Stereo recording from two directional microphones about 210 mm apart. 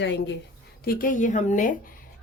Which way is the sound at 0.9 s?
40° left (ahead or behind).